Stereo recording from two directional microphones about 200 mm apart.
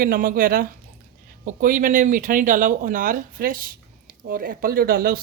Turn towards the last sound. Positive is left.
turn(degrees=-50)  # may be behind; listen again after turning